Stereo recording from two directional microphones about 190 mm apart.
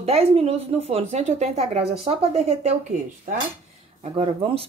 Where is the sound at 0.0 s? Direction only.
35° right (ahead or behind).